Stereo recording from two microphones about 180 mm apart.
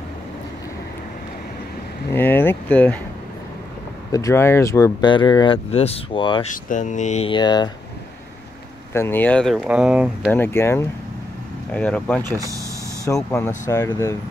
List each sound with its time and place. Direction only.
2.1 s speech: 10° left (ahead or behind)
4.1 s speech: 15° left (ahead or behind)
6.4 s speech: 45° left (ahead or behind)
7.2 s speech: 25° left (ahead or behind)
8.9 s speech: 10° left (ahead or behind); by 10.3 s 5° right (ahead or behind)
10.3 s speech: 15° left (ahead or behind)
12.4 s vehicle: 20° right (ahead or behind)
13.1 s speech: 15° left (ahead or behind)